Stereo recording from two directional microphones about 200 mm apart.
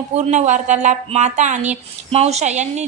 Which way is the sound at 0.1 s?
35° right (ahead or behind).